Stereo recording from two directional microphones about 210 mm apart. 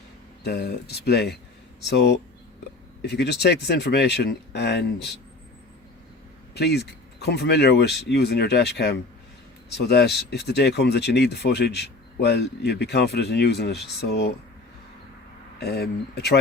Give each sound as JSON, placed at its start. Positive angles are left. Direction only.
{"t": 0.4, "sound": "speech", "side_deg": 50}
{"t": 6.5, "sound": "speech", "side_deg": 50}
{"t": 15.6, "sound": "speech", "side_deg": 50}